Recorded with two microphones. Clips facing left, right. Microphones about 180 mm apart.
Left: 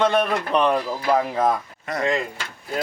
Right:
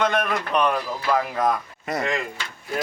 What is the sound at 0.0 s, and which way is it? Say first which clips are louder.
Speech: left 3 dB; 30° left (ahead or behind).